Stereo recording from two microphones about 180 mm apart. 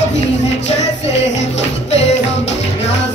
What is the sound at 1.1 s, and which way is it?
Music, 80° left.